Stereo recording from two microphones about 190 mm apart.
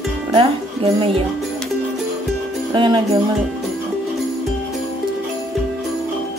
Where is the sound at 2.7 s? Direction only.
25° right (ahead or behind).